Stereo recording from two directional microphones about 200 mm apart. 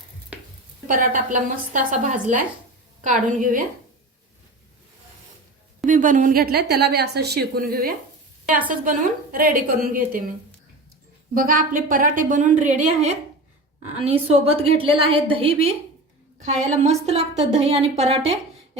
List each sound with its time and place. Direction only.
0.9 s a woman's voice: 45° right (ahead or behind)
5.8 s a woman's voice: 40° right (ahead or behind)
11.3 s a woman's voice: 45° right (ahead or behind)